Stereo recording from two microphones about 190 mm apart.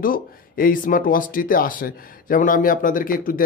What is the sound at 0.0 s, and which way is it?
Speech, 50° left (ahead or behind).